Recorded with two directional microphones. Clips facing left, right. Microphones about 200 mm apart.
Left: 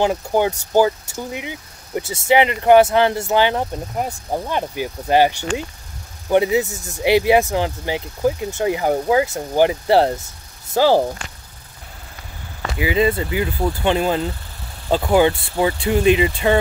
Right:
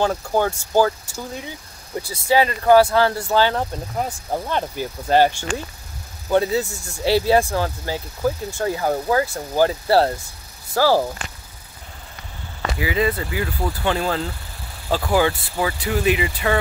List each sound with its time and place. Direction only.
0.0 s speech: 15° left (ahead or behind)
6.3 s speech: 15° left (ahead or behind)
12.7 s speech: 25° left (ahead or behind)